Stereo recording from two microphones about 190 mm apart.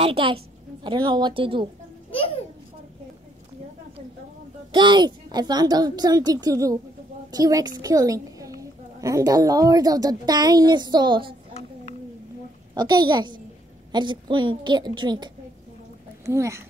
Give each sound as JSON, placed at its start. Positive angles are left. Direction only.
{"t": 0.0, "sound": "a woman's voice", "side_deg": -30}
{"t": 2.0, "sound": "babbling", "side_deg": 30}
{"t": 4.7, "sound": "a woman's voice", "side_deg": -25}
{"t": 12.7, "sound": "a woman's voice", "side_deg": -20}
{"t": 16.3, "sound": "speech", "side_deg": -15}